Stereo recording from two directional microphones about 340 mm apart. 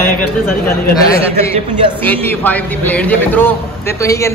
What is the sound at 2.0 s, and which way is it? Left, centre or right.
A man's voice, centre.